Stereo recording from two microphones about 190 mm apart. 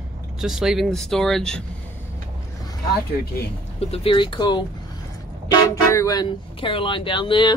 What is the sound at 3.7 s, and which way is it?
Speech, 30° left (ahead or behind).